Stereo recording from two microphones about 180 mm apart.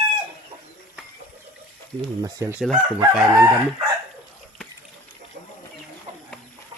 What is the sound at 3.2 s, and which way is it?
Chicken, 15° right (ahead or behind).